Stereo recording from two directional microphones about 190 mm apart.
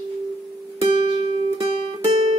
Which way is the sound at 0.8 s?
30° right (ahead or behind).